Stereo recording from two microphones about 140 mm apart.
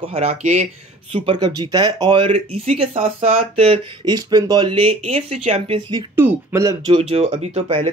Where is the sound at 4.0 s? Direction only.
30° right (ahead or behind); by 5.8 s 50° right (ahead or behind).